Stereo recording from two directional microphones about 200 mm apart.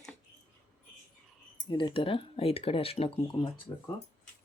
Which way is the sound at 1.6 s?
25° left (ahead or behind).